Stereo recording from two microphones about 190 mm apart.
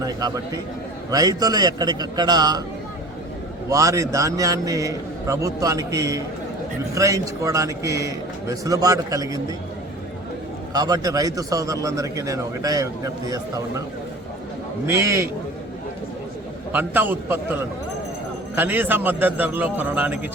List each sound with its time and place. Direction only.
0.0 s a man's voice: 20° right (ahead or behind)
3.7 s speech: 15° right (ahead or behind)
10.8 s speech: 20° right (ahead or behind)
14.8 s speech: 15° right (ahead or behind)
16.7 s speech: 10° right (ahead or behind)